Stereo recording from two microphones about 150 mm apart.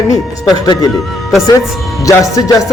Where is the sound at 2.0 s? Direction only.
20° left (ahead or behind).